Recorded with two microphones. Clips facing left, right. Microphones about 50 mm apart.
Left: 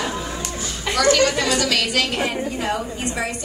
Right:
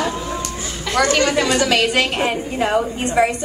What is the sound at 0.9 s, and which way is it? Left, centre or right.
A woman's voice, right.